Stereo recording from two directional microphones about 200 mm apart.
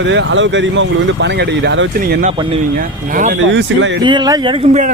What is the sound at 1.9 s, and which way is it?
Speech, 50° right (ahead or behind).